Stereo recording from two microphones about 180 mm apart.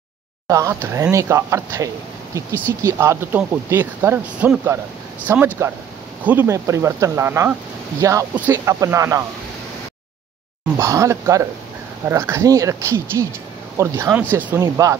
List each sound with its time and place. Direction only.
0.5 s speech: 20° right (ahead or behind)
10.8 s speech: 15° right (ahead or behind)